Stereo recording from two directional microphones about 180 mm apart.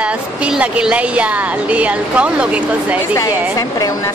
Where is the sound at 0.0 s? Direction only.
5° right (ahead or behind).